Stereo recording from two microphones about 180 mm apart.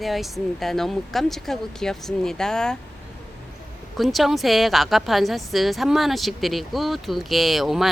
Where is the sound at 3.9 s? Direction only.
Centre (ahead or behind).